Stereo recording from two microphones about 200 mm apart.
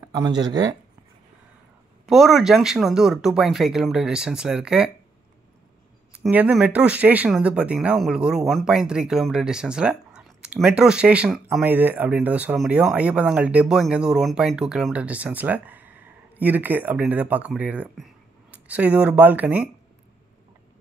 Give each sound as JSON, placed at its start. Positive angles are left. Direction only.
{"t": 0.1, "sound": "speech", "side_deg": -20}
{"t": 2.0, "sound": "speech", "side_deg": 0}
{"t": 6.1, "sound": "speech", "side_deg": -5}